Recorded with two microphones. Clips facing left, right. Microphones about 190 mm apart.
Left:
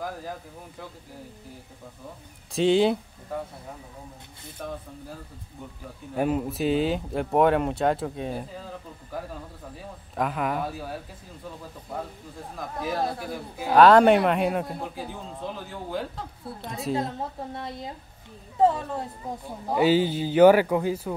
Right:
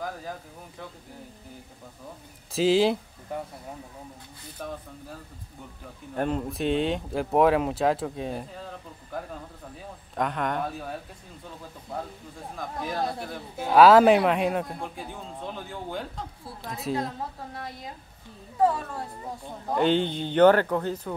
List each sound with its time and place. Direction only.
2.5 s speech: centre (ahead or behind)
4.6 s speech: centre (ahead or behind)
6.1 s speech: 5° left (ahead or behind)
10.1 s speech: 5° left (ahead or behind)
12.5 s speech: 5° left (ahead or behind)
17.6 s speech: 25° left (ahead or behind)
19.7 s a man's voice: 5° left (ahead or behind)